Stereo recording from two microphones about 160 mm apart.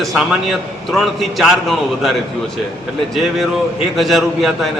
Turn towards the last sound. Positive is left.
turn(degrees=0)  # may be behind; listen again after turning